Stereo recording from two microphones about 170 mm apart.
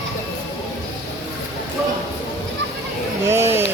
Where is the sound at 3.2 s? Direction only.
15° right (ahead or behind).